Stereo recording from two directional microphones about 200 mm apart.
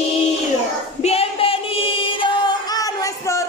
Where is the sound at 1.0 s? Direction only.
30° left (ahead or behind).